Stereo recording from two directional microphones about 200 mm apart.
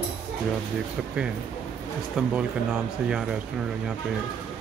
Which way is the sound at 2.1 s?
5° right (ahead or behind).